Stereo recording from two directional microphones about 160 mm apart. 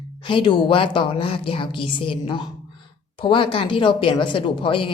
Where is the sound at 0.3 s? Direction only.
30° left (ahead or behind).